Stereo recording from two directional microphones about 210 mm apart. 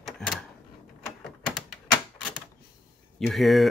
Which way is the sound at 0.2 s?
5° left (ahead or behind).